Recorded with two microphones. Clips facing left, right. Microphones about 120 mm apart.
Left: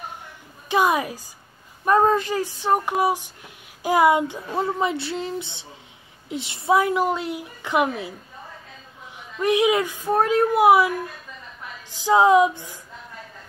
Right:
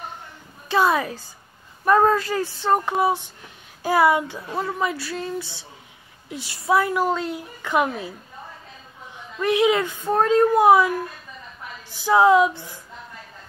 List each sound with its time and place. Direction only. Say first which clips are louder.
0.7 s a woman's voice: even; 15° left (ahead or behind)
9.4 s a woman's voice: even; 15° left (ahead or behind)
12.0 s speech: even; 20° left (ahead or behind)